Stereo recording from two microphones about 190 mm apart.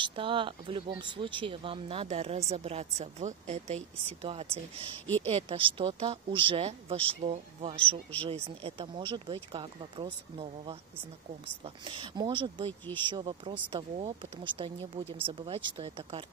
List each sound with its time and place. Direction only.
0.0 s speech: 25° right (ahead or behind)
5.0 s speech: 10° left (ahead or behind)
5.3 s speech: 30° right (ahead or behind)
12.6 s speech: 10° left (ahead or behind)
13.1 s speech: 25° right (ahead or behind)